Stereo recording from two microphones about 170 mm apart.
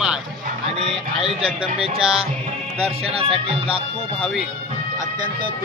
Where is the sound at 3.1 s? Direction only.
35° right (ahead or behind).